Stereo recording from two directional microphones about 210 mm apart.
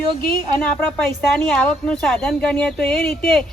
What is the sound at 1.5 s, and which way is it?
Speech, 5° left (ahead or behind).